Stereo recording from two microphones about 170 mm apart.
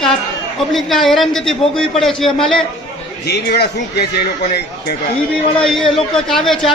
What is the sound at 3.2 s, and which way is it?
Speech, 70° left (ahead or behind).